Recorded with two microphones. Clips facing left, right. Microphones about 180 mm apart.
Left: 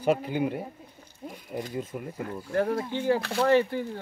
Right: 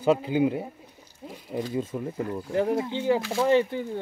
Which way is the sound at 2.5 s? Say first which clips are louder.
Right 1 dB; 20° right (ahead or behind).